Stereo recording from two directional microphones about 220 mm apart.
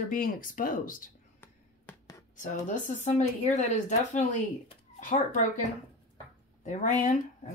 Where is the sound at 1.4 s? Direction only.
10° left (ahead or behind).